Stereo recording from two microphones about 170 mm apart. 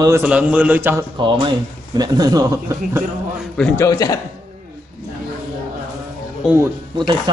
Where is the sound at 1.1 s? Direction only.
25° right (ahead or behind).